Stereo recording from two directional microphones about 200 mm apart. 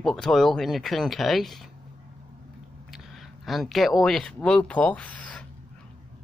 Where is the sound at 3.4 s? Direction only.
Centre (ahead or behind).